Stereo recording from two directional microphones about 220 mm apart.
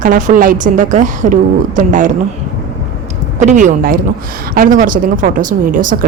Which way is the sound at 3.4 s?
35° right (ahead or behind).